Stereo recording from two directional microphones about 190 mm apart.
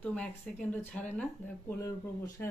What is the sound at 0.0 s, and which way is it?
Speech, 5° left (ahead or behind).